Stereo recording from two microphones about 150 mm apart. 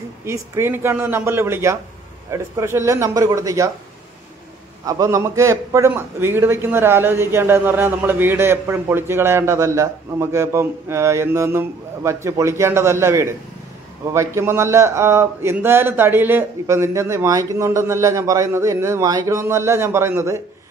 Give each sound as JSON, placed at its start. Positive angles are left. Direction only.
{"t": 0.2, "sound": "a man's voice", "side_deg": -15}
{"t": 4.8, "sound": "a man's voice", "side_deg": -20}